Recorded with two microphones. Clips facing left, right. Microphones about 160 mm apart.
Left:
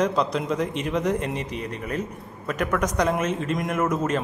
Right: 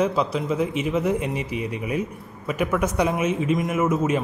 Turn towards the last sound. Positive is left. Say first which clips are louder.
# right 2 dB
turn(degrees=-5)  # may be behind; listen again after turning